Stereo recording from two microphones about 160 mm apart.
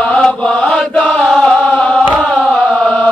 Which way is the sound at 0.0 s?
10° left (ahead or behind).